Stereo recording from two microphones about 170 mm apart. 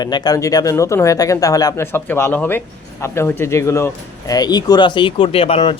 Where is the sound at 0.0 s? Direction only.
25° left (ahead or behind).